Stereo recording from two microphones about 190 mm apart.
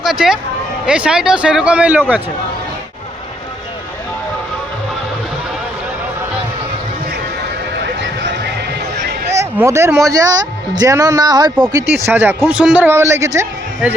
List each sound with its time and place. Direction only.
0.0 s speech: centre (ahead or behind)
7.8 s a sound: 70° right (ahead or behind)
9.3 s speech: 15° right (ahead or behind)